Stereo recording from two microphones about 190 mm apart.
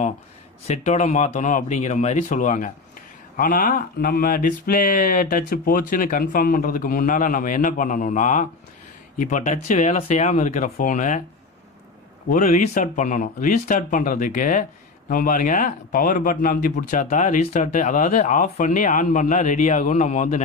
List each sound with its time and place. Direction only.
0.7 s speech: 35° left (ahead or behind)
12.3 s speech: 40° left (ahead or behind)